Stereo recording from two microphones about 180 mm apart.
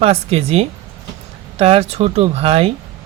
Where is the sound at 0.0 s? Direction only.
35° right (ahead or behind).